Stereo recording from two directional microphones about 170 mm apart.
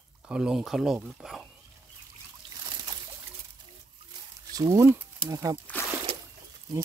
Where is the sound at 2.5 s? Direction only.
25° right (ahead or behind).